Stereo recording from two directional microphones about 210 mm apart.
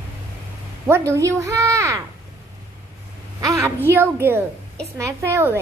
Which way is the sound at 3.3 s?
15° right (ahead or behind).